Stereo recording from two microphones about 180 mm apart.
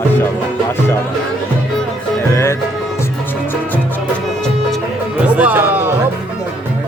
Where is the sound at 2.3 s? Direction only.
15° left (ahead or behind).